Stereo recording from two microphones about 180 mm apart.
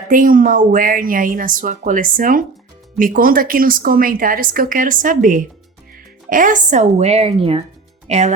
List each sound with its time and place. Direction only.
0.1 s speech: 50° right (ahead or behind)